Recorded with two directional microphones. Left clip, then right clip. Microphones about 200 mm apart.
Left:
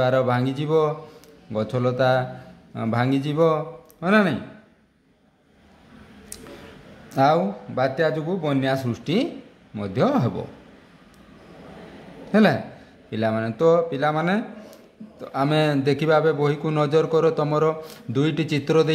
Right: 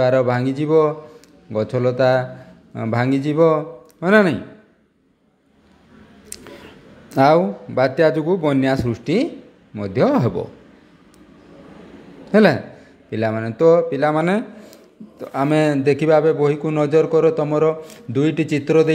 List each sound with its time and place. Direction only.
0.0 s a man's voice: 15° right (ahead or behind)
7.1 s a man's voice: 25° right (ahead or behind)
12.3 s a man's voice: 20° right (ahead or behind)